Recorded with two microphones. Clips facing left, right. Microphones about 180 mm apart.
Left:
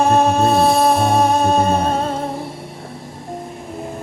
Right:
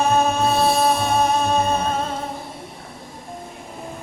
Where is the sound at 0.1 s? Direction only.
45° left (ahead or behind).